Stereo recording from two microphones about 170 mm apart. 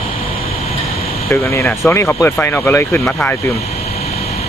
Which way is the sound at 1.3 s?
15° left (ahead or behind).